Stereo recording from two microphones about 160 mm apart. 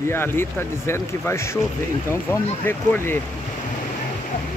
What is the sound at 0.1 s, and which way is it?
Speech, 15° left (ahead or behind).